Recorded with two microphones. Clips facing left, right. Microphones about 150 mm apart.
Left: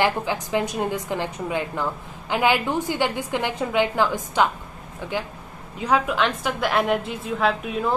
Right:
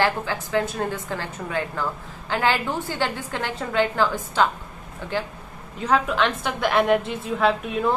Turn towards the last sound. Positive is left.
turn(degrees=0)  # may be behind; listen again after turning